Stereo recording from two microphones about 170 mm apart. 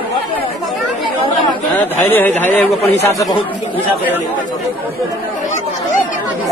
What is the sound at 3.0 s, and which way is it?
Speech, 20° left (ahead or behind).